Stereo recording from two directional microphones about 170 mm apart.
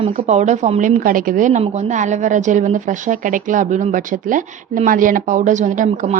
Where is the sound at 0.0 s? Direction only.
40° right (ahead or behind).